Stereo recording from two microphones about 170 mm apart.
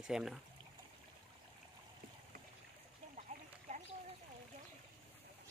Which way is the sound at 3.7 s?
40° right (ahead or behind).